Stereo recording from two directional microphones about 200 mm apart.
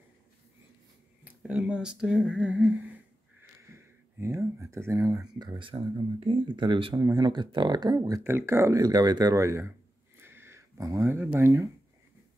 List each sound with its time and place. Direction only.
1.2 s speech: 5° right (ahead or behind)
3.7 s speech: 15° right (ahead or behind)
10.1 s a sound: 10° right (ahead or behind)